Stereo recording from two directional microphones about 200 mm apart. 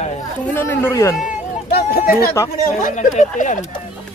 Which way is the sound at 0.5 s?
10° left (ahead or behind).